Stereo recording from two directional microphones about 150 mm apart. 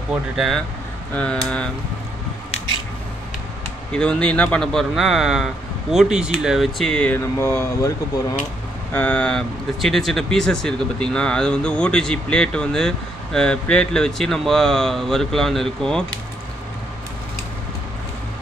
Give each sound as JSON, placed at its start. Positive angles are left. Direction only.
{"t": 1.1, "sound": "speech", "side_deg": 10}
{"t": 3.9, "sound": "speech", "side_deg": 5}
{"t": 8.9, "sound": "speech", "side_deg": 10}